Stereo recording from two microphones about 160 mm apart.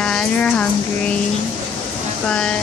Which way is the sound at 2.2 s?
5° left (ahead or behind).